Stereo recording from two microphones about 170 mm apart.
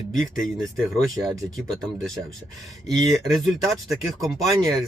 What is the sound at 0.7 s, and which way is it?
Speech, centre (ahead or behind).